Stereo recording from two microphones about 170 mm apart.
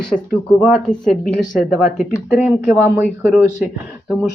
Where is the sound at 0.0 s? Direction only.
Centre (ahead or behind).